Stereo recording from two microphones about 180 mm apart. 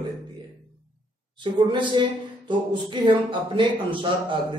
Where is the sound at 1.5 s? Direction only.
25° right (ahead or behind).